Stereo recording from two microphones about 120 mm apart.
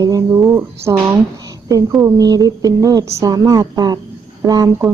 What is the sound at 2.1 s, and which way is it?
A woman's voice, 30° right (ahead or behind).